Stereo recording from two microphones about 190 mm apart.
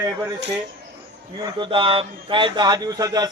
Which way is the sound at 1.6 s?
25° right (ahead or behind).